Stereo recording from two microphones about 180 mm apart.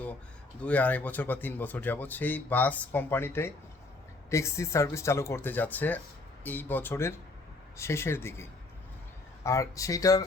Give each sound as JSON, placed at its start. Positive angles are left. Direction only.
{"t": 0.6, "sound": "speech", "side_deg": 10}